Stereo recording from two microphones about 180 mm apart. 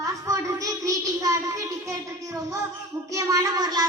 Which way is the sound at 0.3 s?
20° right (ahead or behind).